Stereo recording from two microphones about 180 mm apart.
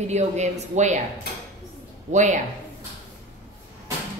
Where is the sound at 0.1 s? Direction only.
40° right (ahead or behind).